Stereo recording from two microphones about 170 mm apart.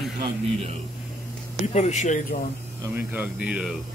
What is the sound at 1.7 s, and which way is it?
Speech, 45° left (ahead or behind).